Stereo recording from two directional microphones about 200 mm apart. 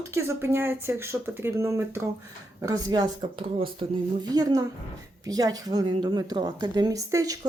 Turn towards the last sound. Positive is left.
turn(degrees=-15)  # may be behind; listen again after turning